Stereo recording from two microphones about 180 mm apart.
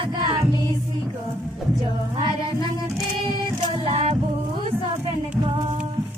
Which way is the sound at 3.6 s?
30° right (ahead or behind).